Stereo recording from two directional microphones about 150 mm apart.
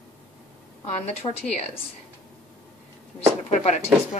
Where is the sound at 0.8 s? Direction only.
45° left (ahead or behind).